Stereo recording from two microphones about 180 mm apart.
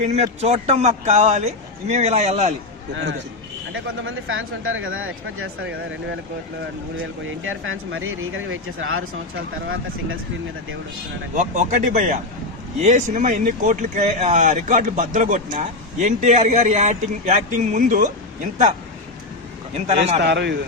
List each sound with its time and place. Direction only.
0.0 s speech: 40° right (ahead or behind)
2.9 s a man's voice: 85° right
11.3 s speech: 45° right (ahead or behind)
19.7 s speech: 35° right (ahead or behind)
20.2 s a man's voice: 70° right (ahead or behind)